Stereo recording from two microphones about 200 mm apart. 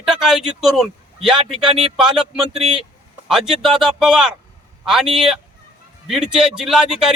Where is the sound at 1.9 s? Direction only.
5° right (ahead or behind).